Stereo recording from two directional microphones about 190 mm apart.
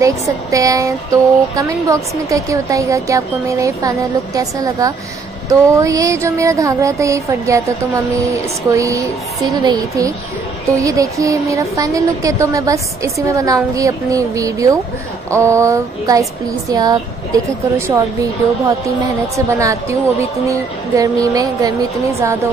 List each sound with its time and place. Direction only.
0.0 s a woman's voice: 15° right (ahead or behind)
19.3 s speech: 15° right (ahead or behind)